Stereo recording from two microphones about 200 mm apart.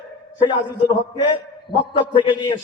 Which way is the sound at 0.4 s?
20° left (ahead or behind).